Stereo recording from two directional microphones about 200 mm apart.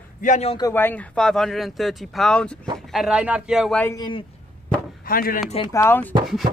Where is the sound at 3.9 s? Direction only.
25° left (ahead or behind).